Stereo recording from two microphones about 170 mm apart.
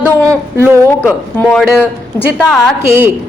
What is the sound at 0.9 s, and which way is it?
A woman's voice, 10° left (ahead or behind).